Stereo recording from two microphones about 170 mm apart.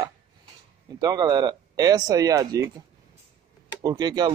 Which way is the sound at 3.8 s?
25° right (ahead or behind).